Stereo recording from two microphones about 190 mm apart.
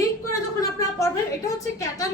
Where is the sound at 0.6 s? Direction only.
15° left (ahead or behind).